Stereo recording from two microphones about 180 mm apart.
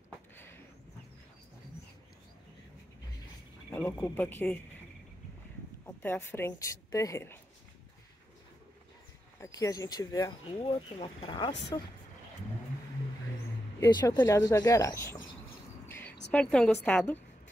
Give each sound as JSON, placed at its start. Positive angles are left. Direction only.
{"t": 3.7, "sound": "speech", "side_deg": 10}
{"t": 6.0, "sound": "speech", "side_deg": 15}
{"t": 9.4, "sound": "speech", "side_deg": 20}
{"t": 13.7, "sound": "speech", "side_deg": 15}
{"t": 15.9, "sound": "a sound", "side_deg": 10}
{"t": 16.3, "sound": "a woman's voice", "side_deg": 5}